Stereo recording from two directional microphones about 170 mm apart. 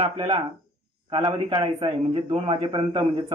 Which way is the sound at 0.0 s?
30° right (ahead or behind).